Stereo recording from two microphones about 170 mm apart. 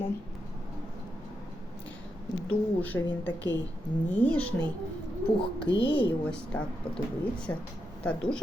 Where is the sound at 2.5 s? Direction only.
10° left (ahead or behind).